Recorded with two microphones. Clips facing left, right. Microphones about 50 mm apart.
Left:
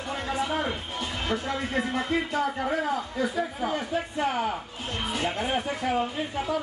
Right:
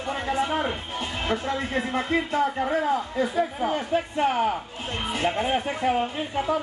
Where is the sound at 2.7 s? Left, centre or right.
Right.